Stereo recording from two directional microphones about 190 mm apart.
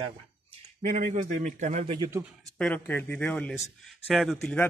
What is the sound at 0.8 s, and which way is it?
A man's voice, 45° right (ahead or behind).